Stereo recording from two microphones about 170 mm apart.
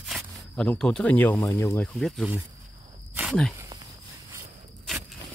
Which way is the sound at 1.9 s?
Centre (ahead or behind).